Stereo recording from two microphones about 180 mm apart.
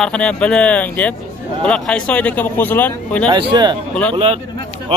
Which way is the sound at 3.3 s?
25° right (ahead or behind).